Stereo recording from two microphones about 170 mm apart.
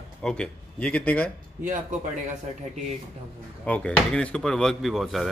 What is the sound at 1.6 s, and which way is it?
Speech, 50° right (ahead or behind).